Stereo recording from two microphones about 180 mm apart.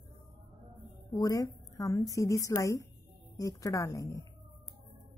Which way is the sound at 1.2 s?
20° left (ahead or behind).